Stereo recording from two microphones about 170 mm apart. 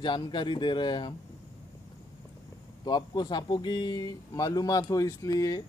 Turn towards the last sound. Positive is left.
turn(degrees=20)  # may be behind; listen again after turning